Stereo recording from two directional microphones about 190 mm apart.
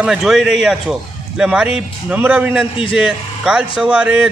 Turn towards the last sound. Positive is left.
turn(degrees=-5)  # may be behind; listen again after turning